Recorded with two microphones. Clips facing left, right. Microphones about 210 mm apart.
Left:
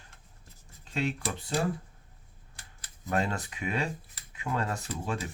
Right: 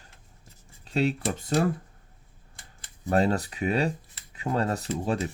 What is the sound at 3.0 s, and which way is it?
Speech, 35° right (ahead or behind).